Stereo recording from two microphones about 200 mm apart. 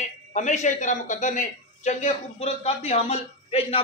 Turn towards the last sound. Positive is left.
turn(degrees=30)  # may be behind; listen again after turning